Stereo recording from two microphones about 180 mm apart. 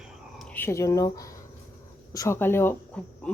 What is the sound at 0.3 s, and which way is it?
Speech, 5° left (ahead or behind).